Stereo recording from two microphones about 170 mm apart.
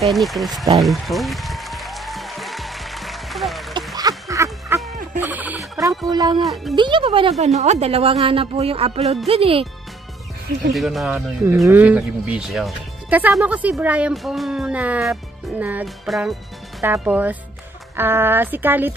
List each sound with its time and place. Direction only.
0.0 s music: centre (ahead or behind)
0.7 s applause: centre (ahead or behind)
4.3 s music: 20° right (ahead or behind)
6.0 s a man's voice: 25° right (ahead or behind)
6.4 s music: centre (ahead or behind)
6.7 s a woman's voice: 30° right (ahead or behind)
10.7 s music: centre (ahead or behind)
11.7 s speech: 10° right (ahead or behind)
15.6 s music: 5° right (ahead or behind)
17.0 s speech: 10° right (ahead or behind)